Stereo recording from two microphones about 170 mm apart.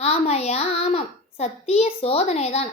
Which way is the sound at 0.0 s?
40° left (ahead or behind).